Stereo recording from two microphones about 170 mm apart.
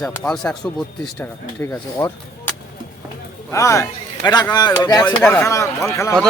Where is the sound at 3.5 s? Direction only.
20° left (ahead or behind).